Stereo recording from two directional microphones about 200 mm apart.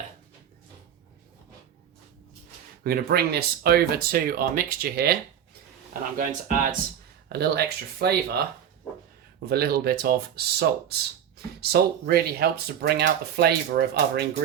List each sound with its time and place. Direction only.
2.8 s speech: 50° right (ahead or behind)
6.1 s speech: 45° right (ahead or behind)
9.5 s speech: 50° right (ahead or behind)